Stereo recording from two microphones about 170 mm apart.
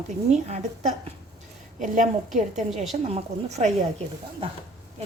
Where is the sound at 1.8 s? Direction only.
50° right (ahead or behind).